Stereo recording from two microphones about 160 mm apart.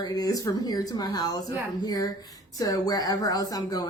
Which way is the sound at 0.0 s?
25° left (ahead or behind).